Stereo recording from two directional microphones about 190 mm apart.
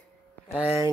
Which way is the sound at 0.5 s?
15° right (ahead or behind).